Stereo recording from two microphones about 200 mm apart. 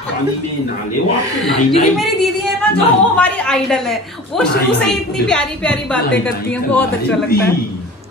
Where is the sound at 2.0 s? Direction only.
Centre (ahead or behind).